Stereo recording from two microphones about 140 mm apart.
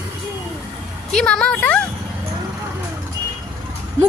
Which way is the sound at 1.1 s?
5° left (ahead or behind).